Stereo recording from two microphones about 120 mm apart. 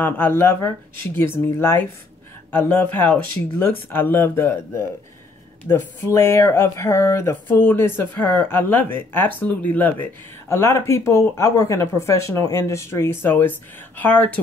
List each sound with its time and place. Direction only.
0.0 s speech: 20° left (ahead or behind)